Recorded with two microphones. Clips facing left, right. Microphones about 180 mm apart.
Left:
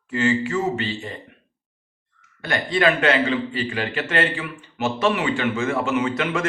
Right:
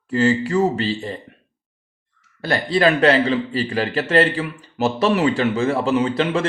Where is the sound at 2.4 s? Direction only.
35° right (ahead or behind).